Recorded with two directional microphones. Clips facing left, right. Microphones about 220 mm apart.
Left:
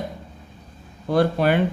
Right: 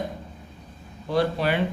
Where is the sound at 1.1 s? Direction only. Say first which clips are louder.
Left 4 dB; 50° left (ahead or behind).